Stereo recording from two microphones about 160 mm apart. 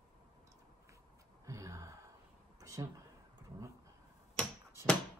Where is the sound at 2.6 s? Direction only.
20° right (ahead or behind).